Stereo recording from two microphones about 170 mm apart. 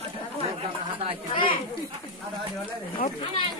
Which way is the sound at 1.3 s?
30° left (ahead or behind).